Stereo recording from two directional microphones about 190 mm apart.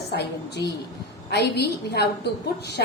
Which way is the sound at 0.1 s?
60° left (ahead or behind).